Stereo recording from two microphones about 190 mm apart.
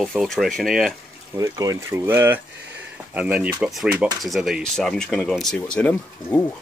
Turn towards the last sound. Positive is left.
turn(degrees=5)  # may be behind; listen again after turning